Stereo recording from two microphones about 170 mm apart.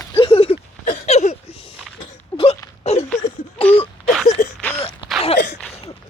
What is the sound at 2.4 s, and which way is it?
Wail, 40° left (ahead or behind).